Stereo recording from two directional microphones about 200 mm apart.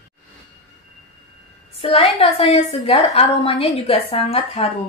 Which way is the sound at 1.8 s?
30° left (ahead or behind).